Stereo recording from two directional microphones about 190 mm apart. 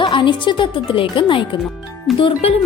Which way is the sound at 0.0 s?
25° left (ahead or behind).